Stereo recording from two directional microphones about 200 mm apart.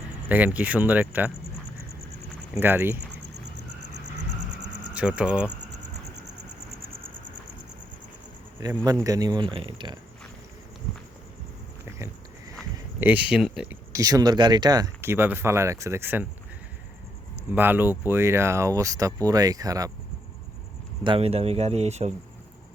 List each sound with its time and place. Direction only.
0.3 s speech: 10° right (ahead or behind)
2.6 s speech: 10° right (ahead or behind)
4.9 s speech: 5° right (ahead or behind)
8.6 s speech: 20° right (ahead or behind)
13.0 s speech: 5° right (ahead or behind)
17.5 s speech: 10° right (ahead or behind)
21.0 s speech: 25° right (ahead or behind)